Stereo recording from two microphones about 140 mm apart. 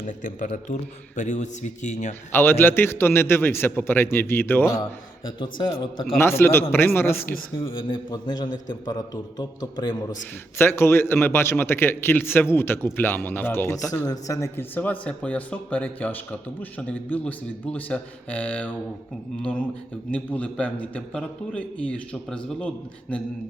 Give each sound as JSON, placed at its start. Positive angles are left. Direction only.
{"t": 0.0, "sound": "a man's voice", "side_deg": 65}
{"t": 2.3, "sound": "a man's voice", "side_deg": 15}
{"t": 5.4, "sound": "a man's voice", "side_deg": 35}
{"t": 6.1, "sound": "a man's voice", "side_deg": 15}
{"t": 7.6, "sound": "a man's voice", "side_deg": 35}
{"t": 8.4, "sound": "a man's voice", "side_deg": 65}
{"t": 8.7, "sound": "a man's voice", "side_deg": 30}
{"t": 10.6, "sound": "a man's voice", "side_deg": 15}